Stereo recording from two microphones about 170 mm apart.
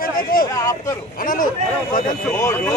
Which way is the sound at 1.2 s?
55° left (ahead or behind).